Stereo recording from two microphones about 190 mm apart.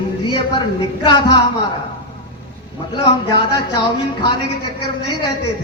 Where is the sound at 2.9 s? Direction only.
25° left (ahead or behind).